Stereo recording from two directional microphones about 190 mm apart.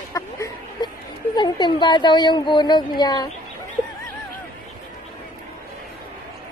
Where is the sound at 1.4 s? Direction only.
25° left (ahead or behind).